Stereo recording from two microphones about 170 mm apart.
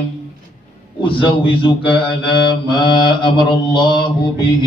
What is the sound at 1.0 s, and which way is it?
A man's voice, 30° left (ahead or behind).